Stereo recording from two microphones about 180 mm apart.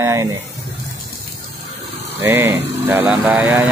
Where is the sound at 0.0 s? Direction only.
15° right (ahead or behind).